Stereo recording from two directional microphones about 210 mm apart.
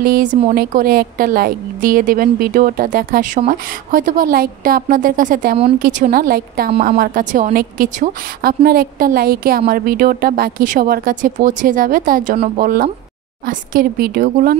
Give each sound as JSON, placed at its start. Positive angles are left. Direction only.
{"t": 0.0, "sound": "speech", "side_deg": -40}
{"t": 0.6, "sound": "a woman's voice", "side_deg": -45}